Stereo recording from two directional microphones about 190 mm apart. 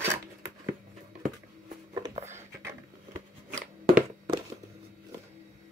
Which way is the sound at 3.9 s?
25° right (ahead or behind).